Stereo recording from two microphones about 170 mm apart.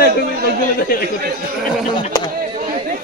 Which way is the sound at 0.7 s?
60° left (ahead or behind).